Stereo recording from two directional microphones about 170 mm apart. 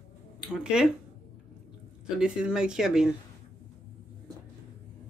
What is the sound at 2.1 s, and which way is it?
Speech, 5° right (ahead or behind).